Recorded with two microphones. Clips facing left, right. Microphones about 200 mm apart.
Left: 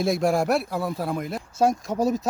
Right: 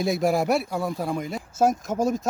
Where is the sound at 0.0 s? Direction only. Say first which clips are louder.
Left 1 dB; centre (ahead or behind).